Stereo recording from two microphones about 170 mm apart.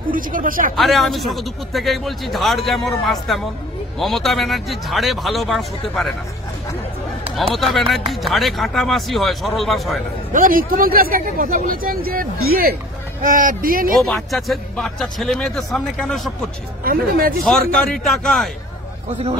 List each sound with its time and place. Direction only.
0.1 s speech: 55° right (ahead or behind)
0.7 s a man's voice: centre (ahead or behind)
7.5 s a man's voice: centre (ahead or behind)
10.3 s speech: 55° right (ahead or behind)
14.0 s a man's voice: centre (ahead or behind)
16.8 s speech: 60° right (ahead or behind)
17.4 s a man's voice: centre (ahead or behind)